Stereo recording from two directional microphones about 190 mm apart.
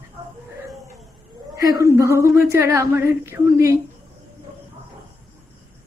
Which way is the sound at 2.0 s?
15° right (ahead or behind).